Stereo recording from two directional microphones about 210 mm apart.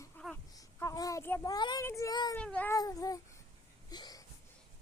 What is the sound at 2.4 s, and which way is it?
Cat, 5° left (ahead or behind).